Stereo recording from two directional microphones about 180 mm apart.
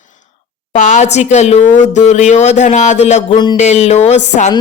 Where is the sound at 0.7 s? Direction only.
45° left (ahead or behind).